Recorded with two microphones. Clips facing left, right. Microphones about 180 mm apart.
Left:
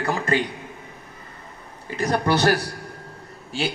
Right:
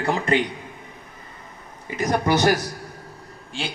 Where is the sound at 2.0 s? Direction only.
15° right (ahead or behind).